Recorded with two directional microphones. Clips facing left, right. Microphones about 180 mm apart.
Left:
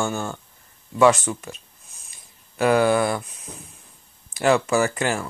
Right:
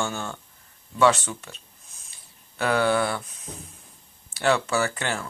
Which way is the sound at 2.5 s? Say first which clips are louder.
Left 4 dB; 10° left (ahead or behind).